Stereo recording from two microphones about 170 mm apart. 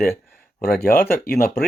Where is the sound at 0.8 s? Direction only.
60° left (ahead or behind).